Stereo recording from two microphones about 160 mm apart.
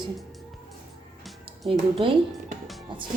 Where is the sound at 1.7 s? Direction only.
35° right (ahead or behind).